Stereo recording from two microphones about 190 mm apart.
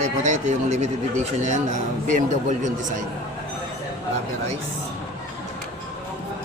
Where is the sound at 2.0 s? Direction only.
40° right (ahead or behind).